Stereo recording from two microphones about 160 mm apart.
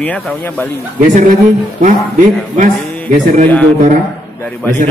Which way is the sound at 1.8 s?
50° right (ahead or behind).